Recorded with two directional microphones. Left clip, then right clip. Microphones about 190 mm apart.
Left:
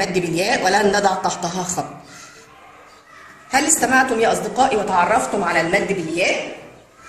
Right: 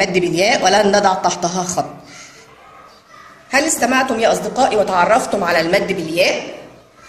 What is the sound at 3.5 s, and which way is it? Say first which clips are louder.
A woman's voice: right 1 dB; 45° right (ahead or behind).